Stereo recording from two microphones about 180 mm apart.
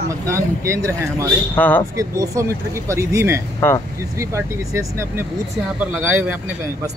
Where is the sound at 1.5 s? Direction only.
10° left (ahead or behind).